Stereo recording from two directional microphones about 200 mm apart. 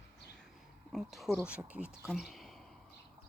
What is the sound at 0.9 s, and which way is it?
A woman's voice, centre (ahead or behind).